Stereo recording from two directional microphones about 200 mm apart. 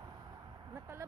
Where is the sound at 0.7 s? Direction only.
15° right (ahead or behind).